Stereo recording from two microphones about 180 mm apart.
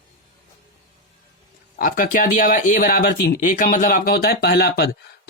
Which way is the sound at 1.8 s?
50° left (ahead or behind).